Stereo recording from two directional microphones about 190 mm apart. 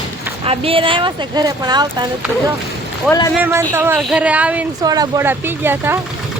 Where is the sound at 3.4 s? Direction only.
15° right (ahead or behind).